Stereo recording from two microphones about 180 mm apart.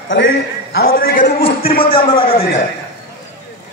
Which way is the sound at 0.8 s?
55° left (ahead or behind).